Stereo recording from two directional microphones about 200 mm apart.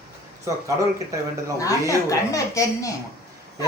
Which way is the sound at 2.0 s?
15° left (ahead or behind).